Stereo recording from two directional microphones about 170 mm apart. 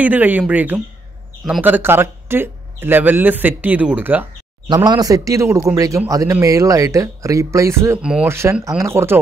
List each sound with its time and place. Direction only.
0.0 s speech: 10° right (ahead or behind)
4.6 s speech: 25° right (ahead or behind)